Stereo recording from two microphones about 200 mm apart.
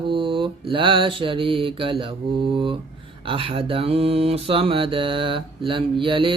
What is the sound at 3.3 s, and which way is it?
Mantra, 25° right (ahead or behind).